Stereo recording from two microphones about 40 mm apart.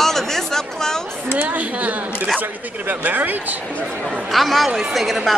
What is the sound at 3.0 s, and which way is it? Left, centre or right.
Speech, right.